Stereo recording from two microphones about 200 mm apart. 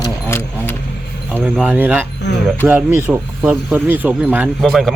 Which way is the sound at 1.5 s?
5° right (ahead or behind).